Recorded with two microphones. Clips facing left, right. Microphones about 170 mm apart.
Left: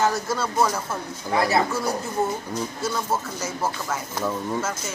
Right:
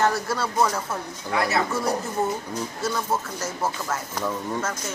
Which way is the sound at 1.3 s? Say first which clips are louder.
Left 2 dB; 30° left (ahead or behind).